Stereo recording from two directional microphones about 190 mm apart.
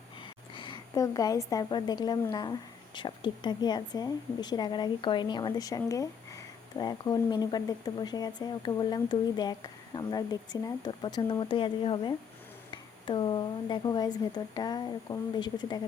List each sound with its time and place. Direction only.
0.5 s a woman's voice: 25° left (ahead or behind)